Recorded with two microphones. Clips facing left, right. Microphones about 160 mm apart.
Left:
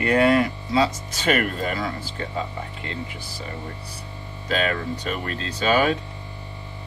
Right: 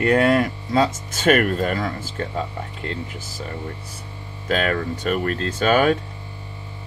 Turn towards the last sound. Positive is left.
turn(degrees=-50)  # may be behind; listen again after turning